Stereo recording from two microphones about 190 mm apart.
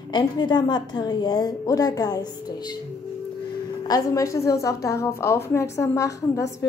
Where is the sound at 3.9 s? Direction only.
15° left (ahead or behind).